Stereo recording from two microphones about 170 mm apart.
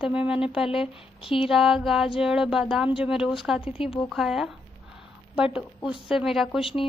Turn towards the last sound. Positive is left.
turn(degrees=0)  # may be behind; listen again after turning